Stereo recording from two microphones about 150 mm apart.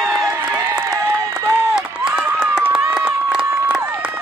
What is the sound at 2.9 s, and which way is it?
Crowd, 5° right (ahead or behind).